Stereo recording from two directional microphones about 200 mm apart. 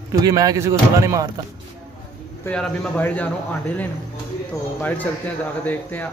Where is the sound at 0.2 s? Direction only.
20° right (ahead or behind).